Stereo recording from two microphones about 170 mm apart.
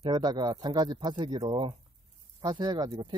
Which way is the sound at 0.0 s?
25° right (ahead or behind).